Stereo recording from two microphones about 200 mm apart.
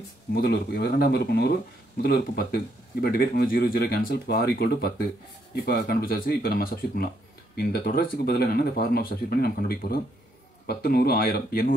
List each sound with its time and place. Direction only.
0.3 s speech: 50° left (ahead or behind)